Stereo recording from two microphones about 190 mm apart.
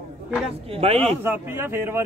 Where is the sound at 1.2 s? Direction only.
10° right (ahead or behind).